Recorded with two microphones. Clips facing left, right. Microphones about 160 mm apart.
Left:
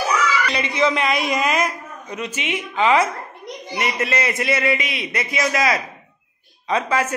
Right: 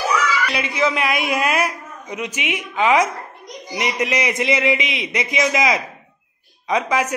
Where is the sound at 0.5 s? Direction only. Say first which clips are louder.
Left 1 dB; 5° right (ahead or behind).